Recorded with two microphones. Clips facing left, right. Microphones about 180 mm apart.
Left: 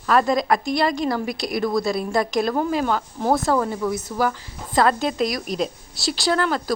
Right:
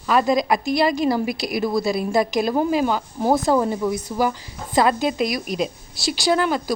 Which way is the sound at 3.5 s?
20° right (ahead or behind).